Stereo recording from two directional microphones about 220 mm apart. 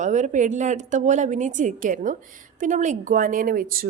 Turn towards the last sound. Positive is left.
turn(degrees=-40)  # may be behind; listen again after turning